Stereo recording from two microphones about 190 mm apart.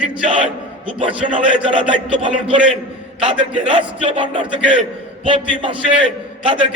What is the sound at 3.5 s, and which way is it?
Speech, 5° right (ahead or behind).